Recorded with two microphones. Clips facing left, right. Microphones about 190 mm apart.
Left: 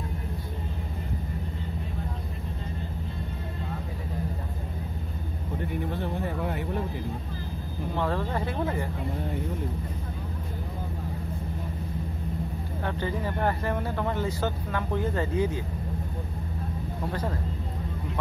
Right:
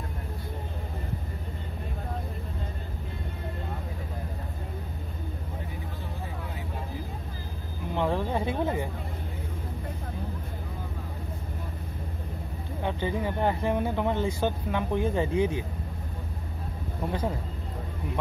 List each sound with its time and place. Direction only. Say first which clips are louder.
5.9 s vehicle: left 8 dB; 65° left (ahead or behind)
7.9 s a sound: right 2 dB; 15° right (ahead or behind)
12.8 s speech: right 2 dB; 15° right (ahead or behind)